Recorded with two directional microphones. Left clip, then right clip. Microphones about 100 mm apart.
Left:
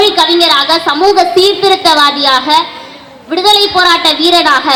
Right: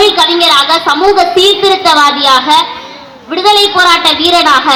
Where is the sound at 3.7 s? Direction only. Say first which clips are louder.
Right 1 dB; 55° left (ahead or behind).